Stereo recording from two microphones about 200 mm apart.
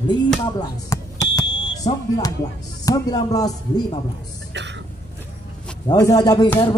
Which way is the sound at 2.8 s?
15° left (ahead or behind).